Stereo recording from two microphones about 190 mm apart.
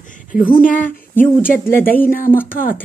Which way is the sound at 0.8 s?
10° left (ahead or behind).